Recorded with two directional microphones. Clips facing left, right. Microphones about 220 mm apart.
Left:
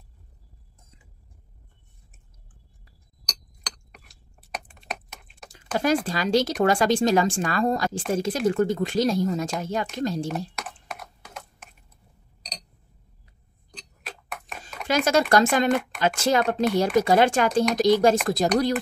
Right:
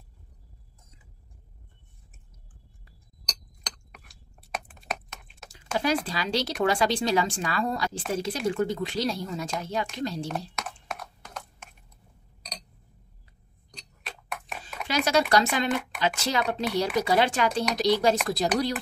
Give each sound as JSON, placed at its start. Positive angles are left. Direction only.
{"t": 3.9, "sound": "chewing", "side_deg": -5}
{"t": 6.0, "sound": "speech", "side_deg": 45}
{"t": 10.3, "sound": "computer keyboard", "side_deg": 0}
{"t": 13.7, "sound": "tick-tock", "side_deg": 0}
{"t": 14.9, "sound": "speech", "side_deg": 45}